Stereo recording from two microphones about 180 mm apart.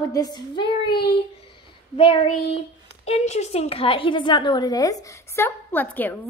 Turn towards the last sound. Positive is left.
turn(degrees=10)  # may be behind; listen again after turning